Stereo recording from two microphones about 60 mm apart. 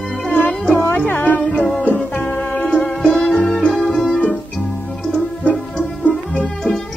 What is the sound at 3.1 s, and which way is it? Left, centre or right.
Music, left.